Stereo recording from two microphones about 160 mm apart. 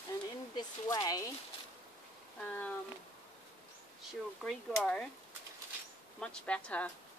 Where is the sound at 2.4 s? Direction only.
15° left (ahead or behind).